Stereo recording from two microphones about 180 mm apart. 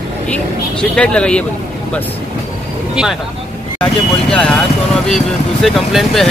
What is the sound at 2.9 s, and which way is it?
Speech, 5° right (ahead or behind).